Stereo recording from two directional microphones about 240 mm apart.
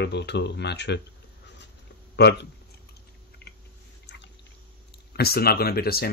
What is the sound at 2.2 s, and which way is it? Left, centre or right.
Speech, left.